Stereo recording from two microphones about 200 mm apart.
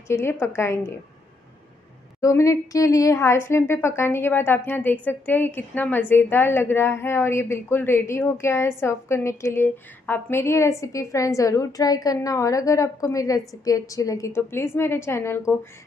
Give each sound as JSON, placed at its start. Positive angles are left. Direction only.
{"t": 0.1, "sound": "a woman's voice", "side_deg": 10}
{"t": 2.2, "sound": "a woman's voice", "side_deg": 15}